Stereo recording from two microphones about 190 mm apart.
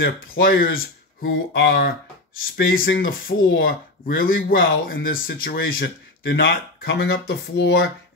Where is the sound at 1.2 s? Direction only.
90° left.